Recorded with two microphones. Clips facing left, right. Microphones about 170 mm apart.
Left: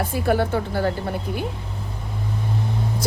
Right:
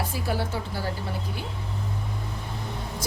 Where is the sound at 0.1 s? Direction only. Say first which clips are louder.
Left 8 dB; 55° left (ahead or behind).